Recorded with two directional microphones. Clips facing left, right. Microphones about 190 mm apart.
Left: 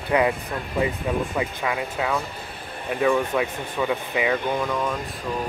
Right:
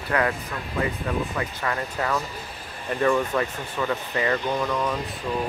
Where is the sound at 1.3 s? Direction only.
10° left (ahead or behind).